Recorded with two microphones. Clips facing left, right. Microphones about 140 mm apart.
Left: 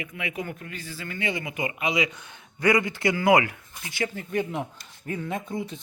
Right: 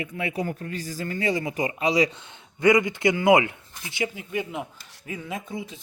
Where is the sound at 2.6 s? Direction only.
20° right (ahead or behind).